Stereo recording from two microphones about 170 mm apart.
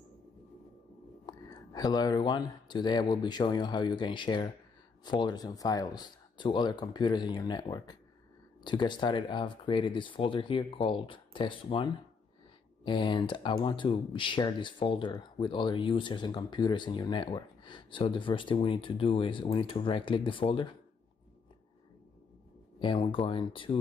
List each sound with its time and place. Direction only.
1.2 s speech: 25° left (ahead or behind)
22.8 s speech: 30° left (ahead or behind)